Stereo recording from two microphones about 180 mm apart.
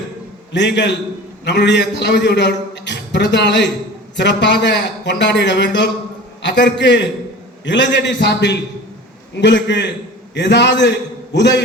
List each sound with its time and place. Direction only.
0.5 s a man's voice: 75° left (ahead or behind)